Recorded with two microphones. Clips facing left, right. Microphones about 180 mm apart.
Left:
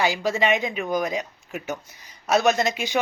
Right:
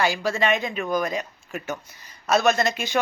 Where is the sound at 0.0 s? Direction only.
15° left (ahead or behind).